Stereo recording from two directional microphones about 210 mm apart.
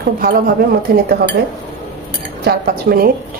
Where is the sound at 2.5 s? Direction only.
45° right (ahead or behind).